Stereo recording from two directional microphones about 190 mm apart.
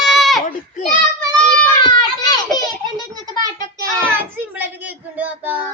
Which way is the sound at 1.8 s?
20° left (ahead or behind).